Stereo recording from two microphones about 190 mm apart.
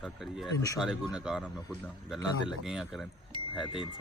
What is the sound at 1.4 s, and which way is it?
A man's voice, 5° left (ahead or behind).